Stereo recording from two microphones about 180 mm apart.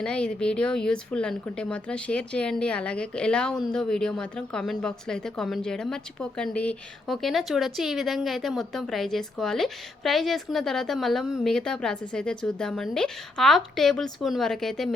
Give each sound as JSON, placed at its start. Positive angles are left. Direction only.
{"t": 0.0, "sound": "speech", "side_deg": 5}